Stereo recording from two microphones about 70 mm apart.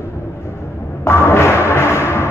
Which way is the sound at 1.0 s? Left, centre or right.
Left.